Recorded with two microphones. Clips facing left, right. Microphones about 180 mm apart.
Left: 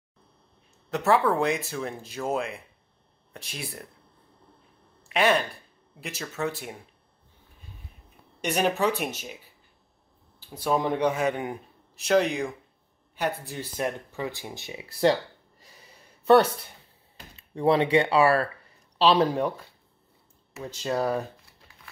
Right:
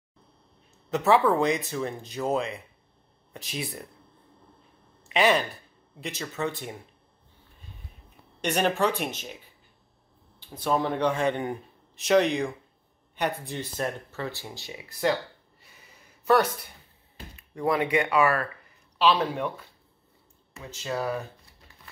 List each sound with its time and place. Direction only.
0.8 s speech: centre (ahead or behind)
5.0 s speech: centre (ahead or behind)
8.4 s a man's voice: 5° left (ahead or behind)
10.4 s a man's voice: 10° left (ahead or behind)
13.5 s speech: 10° left (ahead or behind); by 15.1 s 30° left (ahead or behind)
16.3 s speech: 30° left (ahead or behind)
20.7 s speech: 35° left (ahead or behind)